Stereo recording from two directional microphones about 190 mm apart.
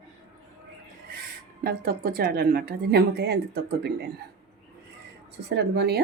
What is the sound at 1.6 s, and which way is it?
A woman's voice, 50° right (ahead or behind).